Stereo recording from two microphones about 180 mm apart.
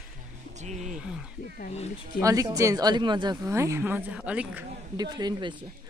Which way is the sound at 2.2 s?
20° right (ahead or behind).